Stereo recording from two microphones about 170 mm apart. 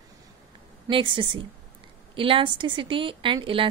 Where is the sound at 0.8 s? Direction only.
30° right (ahead or behind).